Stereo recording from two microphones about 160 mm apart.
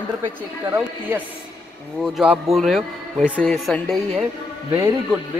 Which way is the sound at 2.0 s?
Centre (ahead or behind).